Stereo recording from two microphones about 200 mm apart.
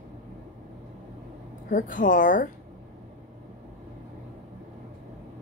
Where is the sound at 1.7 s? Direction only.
40° left (ahead or behind).